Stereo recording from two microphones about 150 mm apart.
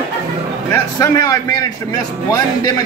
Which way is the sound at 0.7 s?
20° left (ahead or behind).